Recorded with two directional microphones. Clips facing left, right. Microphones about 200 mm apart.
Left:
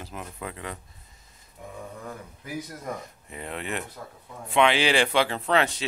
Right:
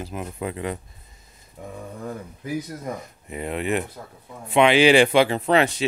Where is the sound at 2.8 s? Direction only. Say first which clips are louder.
Right 3 dB; 15° right (ahead or behind).